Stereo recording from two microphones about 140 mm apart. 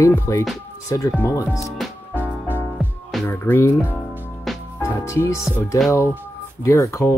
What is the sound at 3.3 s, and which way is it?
Speech, 15° left (ahead or behind).